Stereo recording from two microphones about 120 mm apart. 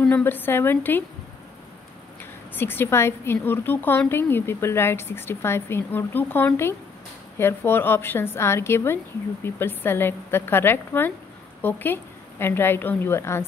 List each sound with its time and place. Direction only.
0.0 s a woman's voice: 15° left (ahead or behind)
2.5 s a woman's voice: 20° left (ahead or behind)